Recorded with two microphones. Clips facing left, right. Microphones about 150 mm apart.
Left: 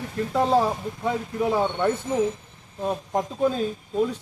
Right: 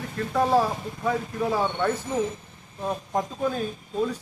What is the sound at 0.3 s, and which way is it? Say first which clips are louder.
A man's voice: left 1 dB; 20° left (ahead or behind).